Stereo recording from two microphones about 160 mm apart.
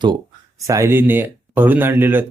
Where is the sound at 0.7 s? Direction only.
15° right (ahead or behind).